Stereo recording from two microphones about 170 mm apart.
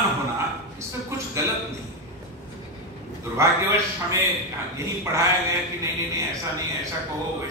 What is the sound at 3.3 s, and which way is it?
A man's voice, 15° right (ahead or behind).